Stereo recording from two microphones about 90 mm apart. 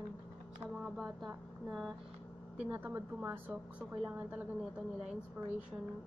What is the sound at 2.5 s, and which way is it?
A woman's voice, 15° right (ahead or behind).